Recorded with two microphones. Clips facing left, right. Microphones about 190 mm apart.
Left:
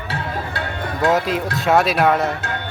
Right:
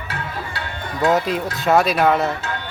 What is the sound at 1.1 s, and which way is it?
Speech, centre (ahead or behind).